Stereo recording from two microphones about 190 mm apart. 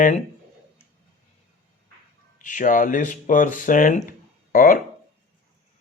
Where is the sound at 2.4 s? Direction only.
45° left (ahead or behind).